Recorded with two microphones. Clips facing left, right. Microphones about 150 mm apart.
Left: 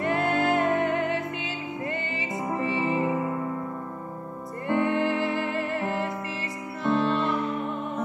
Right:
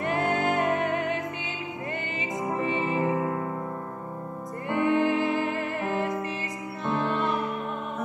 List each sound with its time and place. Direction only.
0.0 s music: 15° right (ahead or behind)
4.6 s music: 15° right (ahead or behind)